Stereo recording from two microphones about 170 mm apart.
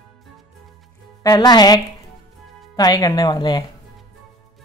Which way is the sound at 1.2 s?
25° left (ahead or behind).